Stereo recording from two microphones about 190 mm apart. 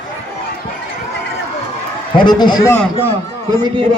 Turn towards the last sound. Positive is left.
turn(degrees=-20)  # may be behind; listen again after turning